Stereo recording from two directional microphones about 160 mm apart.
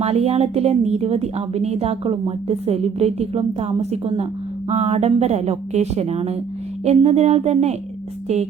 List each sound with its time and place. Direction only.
0.0 s a woman's voice: 40° right (ahead or behind)